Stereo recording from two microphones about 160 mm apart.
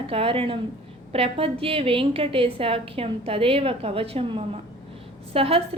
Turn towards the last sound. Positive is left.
turn(degrees=-35)  # may be behind; listen again after turning